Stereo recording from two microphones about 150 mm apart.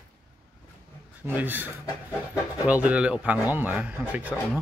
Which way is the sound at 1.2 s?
10° right (ahead or behind).